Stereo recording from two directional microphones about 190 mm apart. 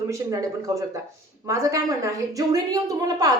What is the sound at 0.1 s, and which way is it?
A woman's voice, 15° right (ahead or behind).